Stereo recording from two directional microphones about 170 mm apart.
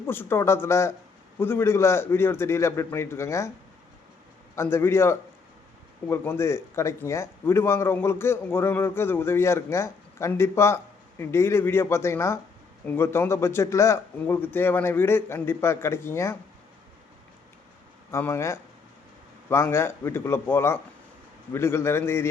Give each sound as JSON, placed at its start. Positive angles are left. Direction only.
{"t": 0.0, "sound": "a man's voice", "side_deg": 15}
{"t": 4.5, "sound": "a man's voice", "side_deg": 15}
{"t": 18.1, "sound": "a man's voice", "side_deg": 15}